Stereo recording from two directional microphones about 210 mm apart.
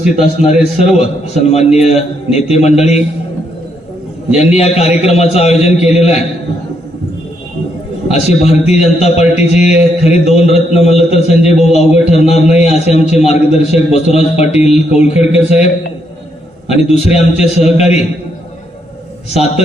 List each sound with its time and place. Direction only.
0.3 s a man's voice: 30° left (ahead or behind)
4.4 s a man's voice: 30° left (ahead or behind)
8.0 s a man's voice: 30° left (ahead or behind)
19.3 s a man's voice: 30° left (ahead or behind)